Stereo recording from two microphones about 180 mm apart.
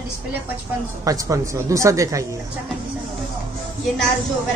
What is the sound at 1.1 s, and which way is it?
Speech, 15° right (ahead or behind).